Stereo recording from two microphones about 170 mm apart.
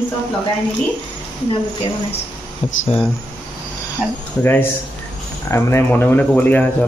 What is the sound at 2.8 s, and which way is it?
Speech, 35° left (ahead or behind).